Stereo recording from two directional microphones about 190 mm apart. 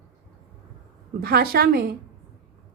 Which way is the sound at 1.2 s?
55° right (ahead or behind).